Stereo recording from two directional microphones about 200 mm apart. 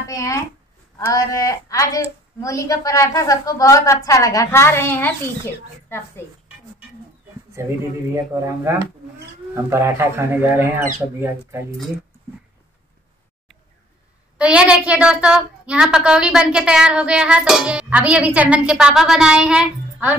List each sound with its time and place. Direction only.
0.1 s a sound: 15° left (ahead or behind)
0.9 s a woman's voice: 15° left (ahead or behind)
7.6 s speech: 15° right (ahead or behind)
14.4 s a woman's voice: 5° right (ahead or behind)